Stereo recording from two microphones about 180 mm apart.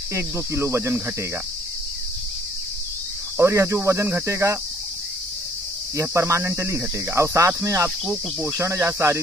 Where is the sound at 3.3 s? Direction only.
15° right (ahead or behind).